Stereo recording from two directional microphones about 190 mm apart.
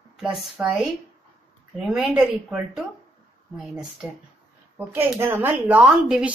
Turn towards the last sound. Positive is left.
turn(degrees=-5)  # may be behind; listen again after turning